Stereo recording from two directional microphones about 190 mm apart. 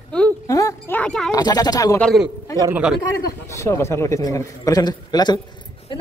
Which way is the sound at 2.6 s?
15° right (ahead or behind).